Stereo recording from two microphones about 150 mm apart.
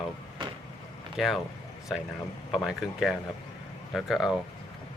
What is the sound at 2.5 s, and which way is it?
Speech, centre (ahead or behind).